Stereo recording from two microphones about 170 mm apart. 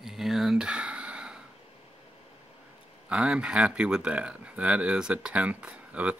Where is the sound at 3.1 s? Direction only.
5° right (ahead or behind).